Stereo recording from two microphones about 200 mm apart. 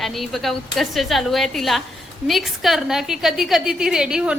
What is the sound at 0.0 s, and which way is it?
A woman's voice, centre (ahead or behind).